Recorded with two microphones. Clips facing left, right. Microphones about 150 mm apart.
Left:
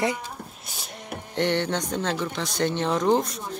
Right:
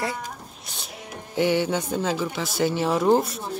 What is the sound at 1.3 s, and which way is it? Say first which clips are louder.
Speech: right 3 dB; 5° right (ahead or behind).